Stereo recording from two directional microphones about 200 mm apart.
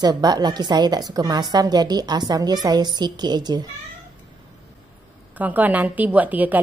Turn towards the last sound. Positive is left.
turn(degrees=-10)  # may be behind; listen again after turning